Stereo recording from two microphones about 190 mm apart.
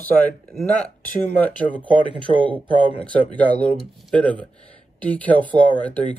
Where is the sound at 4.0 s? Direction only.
5° left (ahead or behind).